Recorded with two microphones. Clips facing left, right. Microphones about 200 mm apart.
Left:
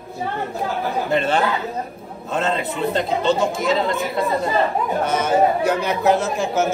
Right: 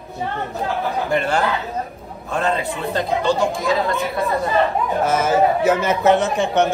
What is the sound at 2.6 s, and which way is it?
A man's voice, centre (ahead or behind).